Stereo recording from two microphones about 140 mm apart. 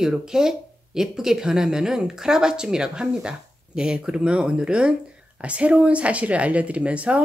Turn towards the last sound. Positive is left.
turn(degrees=-10)  # may be behind; listen again after turning